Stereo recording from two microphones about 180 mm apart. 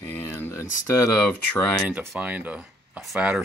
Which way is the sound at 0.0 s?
10° left (ahead or behind).